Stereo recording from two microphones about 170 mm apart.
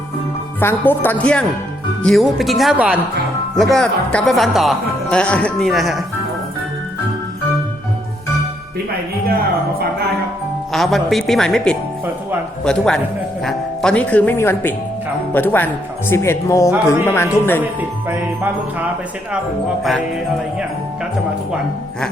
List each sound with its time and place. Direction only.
0.6 s speech: 10° left (ahead or behind)
10.7 s speech: centre (ahead or behind)